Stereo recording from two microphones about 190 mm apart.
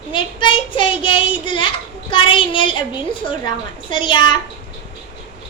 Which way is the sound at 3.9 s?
25° left (ahead or behind).